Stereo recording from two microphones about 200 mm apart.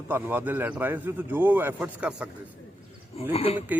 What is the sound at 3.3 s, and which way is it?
Speech, 30° left (ahead or behind).